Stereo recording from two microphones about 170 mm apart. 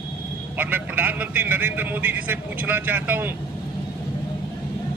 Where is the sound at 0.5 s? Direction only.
10° right (ahead or behind).